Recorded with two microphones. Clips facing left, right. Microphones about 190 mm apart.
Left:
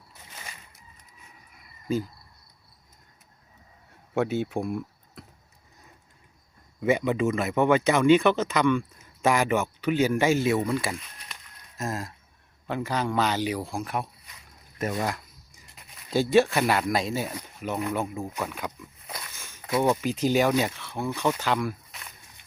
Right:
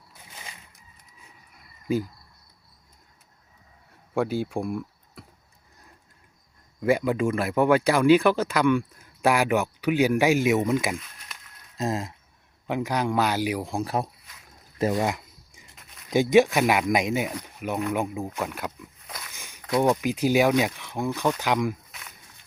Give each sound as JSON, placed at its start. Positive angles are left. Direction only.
{"t": 4.1, "sound": "speech", "side_deg": 0}
{"t": 6.9, "sound": "speech", "side_deg": -5}
{"t": 11.8, "sound": "speech", "side_deg": -20}
{"t": 13.8, "sound": "speech", "side_deg": -35}
{"t": 14.8, "sound": "speech", "side_deg": -25}
{"t": 15.7, "sound": "a sound", "side_deg": 0}
{"t": 16.0, "sound": "speech", "side_deg": -15}
{"t": 19.0, "sound": "a sound", "side_deg": 0}
{"t": 19.4, "sound": "walk", "side_deg": -15}
{"t": 20.0, "sound": "speech", "side_deg": -10}